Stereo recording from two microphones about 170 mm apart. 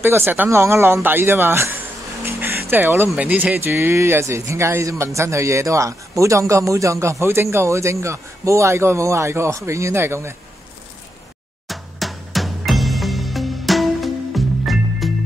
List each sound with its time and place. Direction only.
0.0 s speech: 15° right (ahead or behind)
2.2 s music: 10° right (ahead or behind)
3.1 s speech: 10° right (ahead or behind)
11.6 s music: centre (ahead or behind)